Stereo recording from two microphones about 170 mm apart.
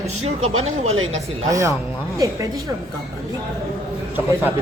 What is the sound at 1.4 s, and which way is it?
Speech, 20° right (ahead or behind).